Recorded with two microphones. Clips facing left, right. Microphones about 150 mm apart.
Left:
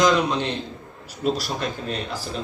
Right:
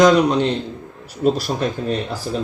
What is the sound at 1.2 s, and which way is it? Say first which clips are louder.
Speech: right 6 dB; 45° right (ahead or behind).